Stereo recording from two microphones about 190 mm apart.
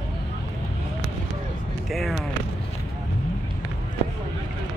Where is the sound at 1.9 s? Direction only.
Centre (ahead or behind).